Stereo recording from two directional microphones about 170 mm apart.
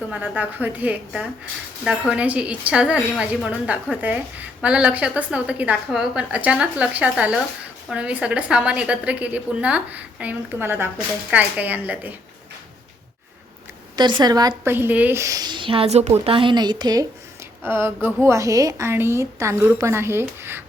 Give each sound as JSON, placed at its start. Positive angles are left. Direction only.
{"t": 0.1, "sound": "a woman's voice", "side_deg": -10}
{"t": 13.9, "sound": "a woman's voice", "side_deg": -25}